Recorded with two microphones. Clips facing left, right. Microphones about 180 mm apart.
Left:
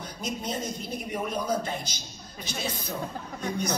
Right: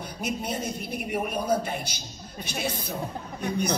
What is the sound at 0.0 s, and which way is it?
A woman's voice, 60° right (ahead or behind).